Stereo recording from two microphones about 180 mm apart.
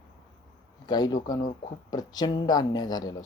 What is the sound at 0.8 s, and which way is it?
Speech, 25° left (ahead or behind).